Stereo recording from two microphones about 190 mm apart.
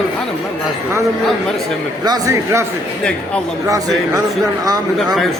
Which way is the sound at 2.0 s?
20° right (ahead or behind).